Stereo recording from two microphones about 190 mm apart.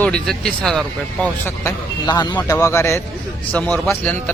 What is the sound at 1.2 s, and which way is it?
A man's voice, 15° left (ahead or behind).